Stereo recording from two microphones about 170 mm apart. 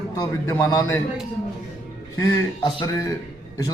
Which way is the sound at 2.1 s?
20° left (ahead or behind).